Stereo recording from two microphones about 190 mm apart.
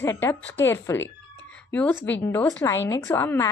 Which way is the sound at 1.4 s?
5° left (ahead or behind).